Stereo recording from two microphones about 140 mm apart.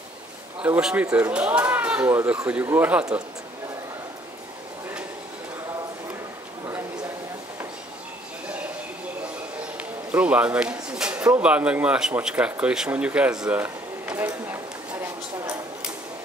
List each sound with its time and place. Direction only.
0.6 s speech: 5° right (ahead or behind)
9.8 s speech: 10° right (ahead or behind)